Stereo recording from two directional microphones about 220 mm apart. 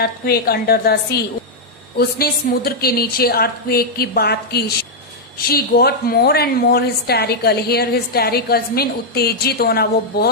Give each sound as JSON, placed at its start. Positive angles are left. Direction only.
{"t": 0.0, "sound": "a woman's voice", "side_deg": 45}